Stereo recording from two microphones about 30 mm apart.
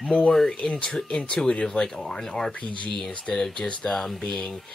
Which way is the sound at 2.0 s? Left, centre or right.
Centre.